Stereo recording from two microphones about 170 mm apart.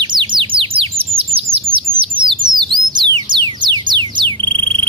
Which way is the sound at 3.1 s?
25° right (ahead or behind).